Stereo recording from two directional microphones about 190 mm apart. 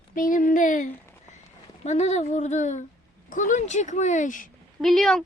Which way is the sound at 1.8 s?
35° left (ahead or behind).